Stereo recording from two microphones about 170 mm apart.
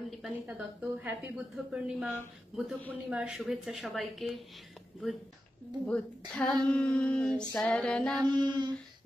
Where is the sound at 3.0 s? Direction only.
5° right (ahead or behind).